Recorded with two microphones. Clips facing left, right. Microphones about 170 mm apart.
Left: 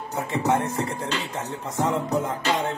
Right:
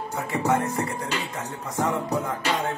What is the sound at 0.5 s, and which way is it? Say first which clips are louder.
Music: even; 25° left (ahead or behind).